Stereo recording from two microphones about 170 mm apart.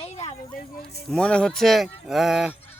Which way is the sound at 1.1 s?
5° left (ahead or behind).